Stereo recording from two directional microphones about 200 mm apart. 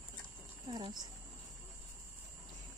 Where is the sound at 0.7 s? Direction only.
20° right (ahead or behind).